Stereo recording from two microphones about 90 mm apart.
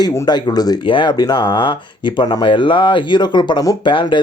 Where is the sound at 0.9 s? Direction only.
70° left (ahead or behind).